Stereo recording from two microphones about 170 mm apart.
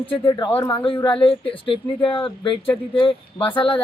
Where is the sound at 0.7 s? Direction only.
30° left (ahead or behind).